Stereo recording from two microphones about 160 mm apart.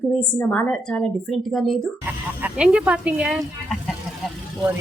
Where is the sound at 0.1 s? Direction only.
10° left (ahead or behind).